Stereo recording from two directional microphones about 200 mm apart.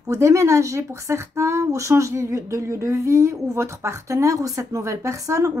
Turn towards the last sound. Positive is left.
turn(degrees=-15)  # may be behind; listen again after turning